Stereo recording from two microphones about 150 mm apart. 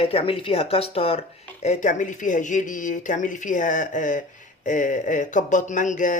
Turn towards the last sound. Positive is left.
turn(degrees=55)  # may be behind; listen again after turning